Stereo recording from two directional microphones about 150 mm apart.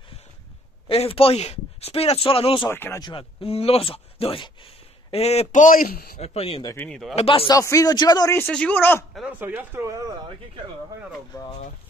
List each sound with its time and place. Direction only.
0.8 s speech: 40° left (ahead or behind)
2.7 s a man's voice: 15° left (ahead or behind)
3.0 s speech: 35° left (ahead or behind); by 6.1 s 85° left
6.1 s speech: 45° left (ahead or behind)
6.6 s a man's voice: 20° left (ahead or behind)
6.9 s speech: centre (ahead or behind)
7.2 s speech: 40° left (ahead or behind)
7.4 s a man's voice: 20° left (ahead or behind)
8.4 s a man's voice: 10° left (ahead or behind)
9.4 s speech: 15° right (ahead or behind)